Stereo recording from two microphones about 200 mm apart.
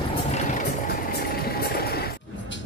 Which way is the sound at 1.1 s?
50° left (ahead or behind).